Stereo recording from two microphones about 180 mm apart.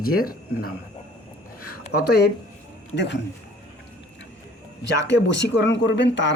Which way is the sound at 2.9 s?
75° left (ahead or behind).